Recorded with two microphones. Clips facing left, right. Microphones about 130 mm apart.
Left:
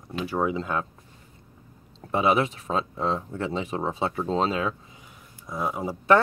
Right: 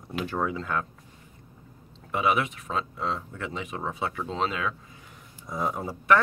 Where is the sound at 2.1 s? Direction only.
30° left (ahead or behind).